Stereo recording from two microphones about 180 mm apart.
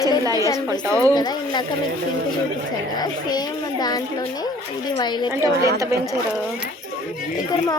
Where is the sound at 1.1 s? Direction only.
20° left (ahead or behind).